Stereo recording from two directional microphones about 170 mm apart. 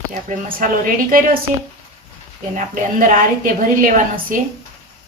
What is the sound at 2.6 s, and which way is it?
A woman's voice, 50° right (ahead or behind).